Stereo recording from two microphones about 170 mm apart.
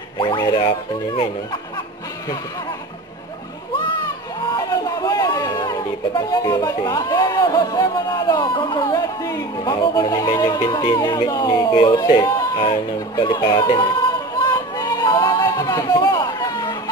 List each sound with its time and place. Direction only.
0.2 s speech: 25° left (ahead or behind)
4.4 s speech: 25° left (ahead or behind)
12.2 s a sound: 20° left (ahead or behind)